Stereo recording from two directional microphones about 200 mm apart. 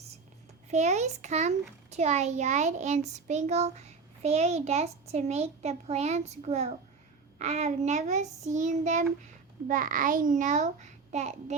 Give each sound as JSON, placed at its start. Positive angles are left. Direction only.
{"t": 0.7, "sound": "a child's voice", "side_deg": -35}